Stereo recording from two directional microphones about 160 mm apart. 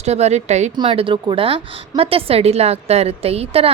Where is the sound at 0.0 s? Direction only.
45° right (ahead or behind).